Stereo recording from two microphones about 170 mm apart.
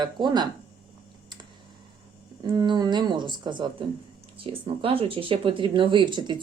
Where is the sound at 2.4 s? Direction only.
25° right (ahead or behind).